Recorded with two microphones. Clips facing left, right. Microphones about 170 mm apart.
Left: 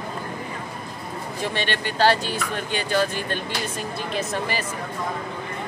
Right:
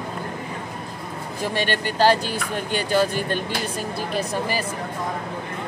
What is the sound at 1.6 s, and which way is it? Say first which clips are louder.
Speech: right 5 dB; 45° right (ahead or behind).